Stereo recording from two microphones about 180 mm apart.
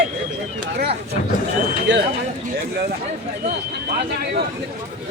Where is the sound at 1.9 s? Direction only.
90° right.